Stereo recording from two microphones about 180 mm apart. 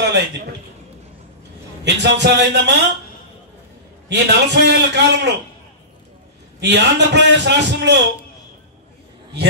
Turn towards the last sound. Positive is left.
turn(degrees=-70)  # may be behind; listen again after turning